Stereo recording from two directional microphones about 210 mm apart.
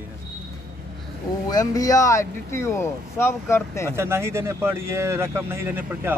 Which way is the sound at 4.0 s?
10° right (ahead or behind).